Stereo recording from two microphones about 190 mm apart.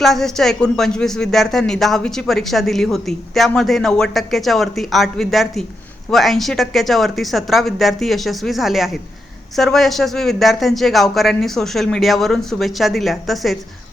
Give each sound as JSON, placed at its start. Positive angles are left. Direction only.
{"t": 0.0, "sound": "speech", "side_deg": 0}